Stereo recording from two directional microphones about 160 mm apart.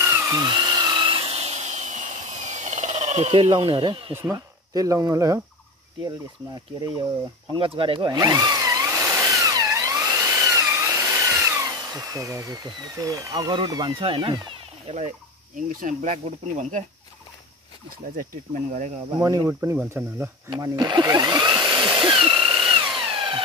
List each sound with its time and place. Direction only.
0.0 s tools: 15° right (ahead or behind); by 4.1 s 35° right (ahead or behind)
4.1 s speech: 15° right (ahead or behind)
7.5 s a sound: 35° right (ahead or behind)
14.9 s speech: 45° right (ahead or behind)
18.1 s speech: 50° right (ahead or behind)
19.1 s speech: 20° right (ahead or behind)
20.4 s speech: 30° right (ahead or behind)
21.8 s tools: 30° right (ahead or behind)